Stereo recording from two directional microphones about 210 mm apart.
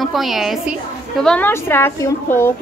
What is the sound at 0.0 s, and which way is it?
A woman's voice, centre (ahead or behind).